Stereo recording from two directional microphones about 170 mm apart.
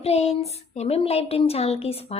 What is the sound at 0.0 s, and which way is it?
A woman's voice, 40° left (ahead or behind).